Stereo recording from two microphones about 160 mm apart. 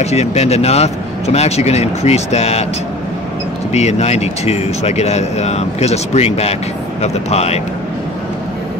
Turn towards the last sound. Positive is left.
turn(degrees=40)  # may be behind; listen again after turning